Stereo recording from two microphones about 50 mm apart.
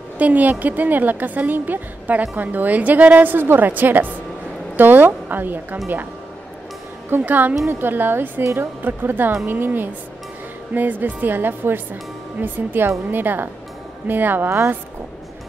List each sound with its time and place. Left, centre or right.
0.2 s speech: right
7.1 s a woman's voice: right